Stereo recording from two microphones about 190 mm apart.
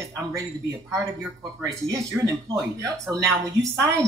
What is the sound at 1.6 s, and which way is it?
Speech, 15° right (ahead or behind).